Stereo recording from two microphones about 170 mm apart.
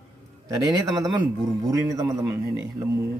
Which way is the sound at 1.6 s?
20° right (ahead or behind).